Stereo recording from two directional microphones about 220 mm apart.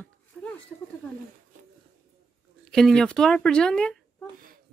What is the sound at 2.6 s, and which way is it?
Speech, 5° left (ahead or behind).